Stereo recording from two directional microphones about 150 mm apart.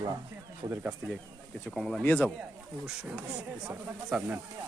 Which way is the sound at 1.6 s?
Centre (ahead or behind).